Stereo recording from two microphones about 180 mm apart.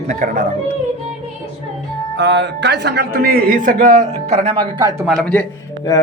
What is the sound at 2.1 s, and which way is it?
A man's voice, 75° right (ahead or behind).